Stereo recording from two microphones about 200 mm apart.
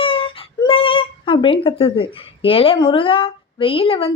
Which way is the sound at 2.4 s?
25° left (ahead or behind).